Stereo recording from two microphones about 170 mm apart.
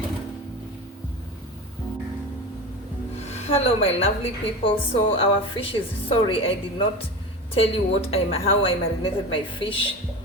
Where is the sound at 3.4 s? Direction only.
35° left (ahead or behind).